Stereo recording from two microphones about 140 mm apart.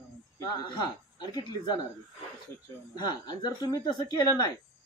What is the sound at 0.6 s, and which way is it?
Speech, 35° left (ahead or behind).